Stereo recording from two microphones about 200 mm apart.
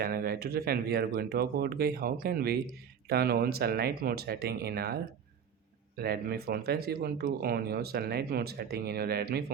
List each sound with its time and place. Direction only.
0.0 s speech: 45° right (ahead or behind)
6.0 s speech: 50° right (ahead or behind)